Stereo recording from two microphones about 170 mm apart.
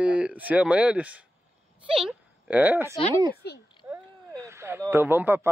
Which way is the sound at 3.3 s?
75° left (ahead or behind).